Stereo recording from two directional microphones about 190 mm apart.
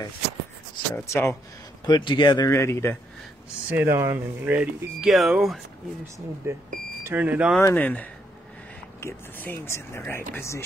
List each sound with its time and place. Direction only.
0.9 s speech: 15° left (ahead or behind)
3.6 s speech: 10° right (ahead or behind)
7.0 s speech: 10° right (ahead or behind)
7.6 s speech: 10° left (ahead or behind)